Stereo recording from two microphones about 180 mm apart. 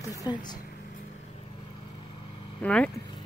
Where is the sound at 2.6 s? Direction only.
5° left (ahead or behind).